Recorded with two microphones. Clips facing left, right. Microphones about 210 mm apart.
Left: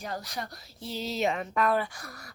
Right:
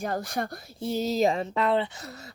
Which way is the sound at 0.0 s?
50° right (ahead or behind).